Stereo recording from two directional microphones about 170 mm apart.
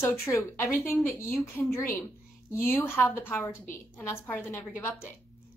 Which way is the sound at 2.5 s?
15° left (ahead or behind).